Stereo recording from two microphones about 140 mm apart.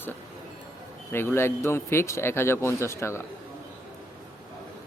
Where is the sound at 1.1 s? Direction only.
15° left (ahead or behind).